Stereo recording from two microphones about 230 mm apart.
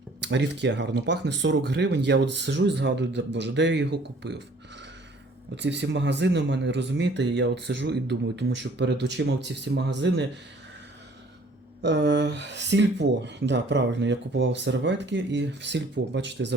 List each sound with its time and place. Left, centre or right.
0.2 s speech: right
5.5 s speech: right
11.8 s speech: right